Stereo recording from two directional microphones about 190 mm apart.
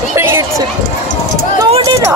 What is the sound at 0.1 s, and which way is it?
Run, 15° right (ahead or behind).